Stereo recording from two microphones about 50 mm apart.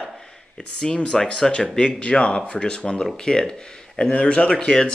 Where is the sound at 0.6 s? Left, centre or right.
Centre.